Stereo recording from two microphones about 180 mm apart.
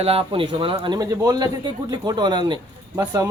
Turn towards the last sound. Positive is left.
turn(degrees=-20)  # may be behind; listen again after turning